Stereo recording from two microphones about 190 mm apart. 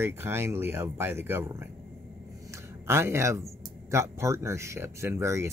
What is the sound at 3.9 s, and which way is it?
Speech, 15° right (ahead or behind).